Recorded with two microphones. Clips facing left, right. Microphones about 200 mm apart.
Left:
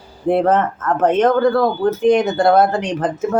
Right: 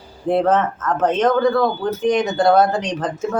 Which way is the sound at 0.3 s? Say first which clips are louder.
Left 2 dB; 10° left (ahead or behind).